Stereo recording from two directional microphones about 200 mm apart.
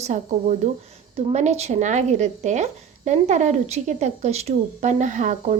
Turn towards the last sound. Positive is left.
turn(degrees=-40)  # may be behind; listen again after turning